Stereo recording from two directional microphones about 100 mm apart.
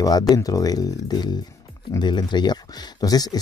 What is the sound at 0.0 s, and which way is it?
Speech, 40° left (ahead or behind).